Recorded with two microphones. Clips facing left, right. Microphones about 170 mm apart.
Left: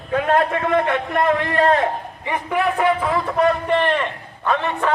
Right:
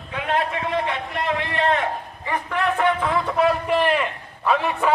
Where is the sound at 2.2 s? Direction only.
15° left (ahead or behind).